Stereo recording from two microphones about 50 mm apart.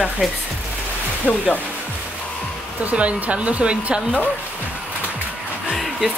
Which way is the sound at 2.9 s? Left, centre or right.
Right.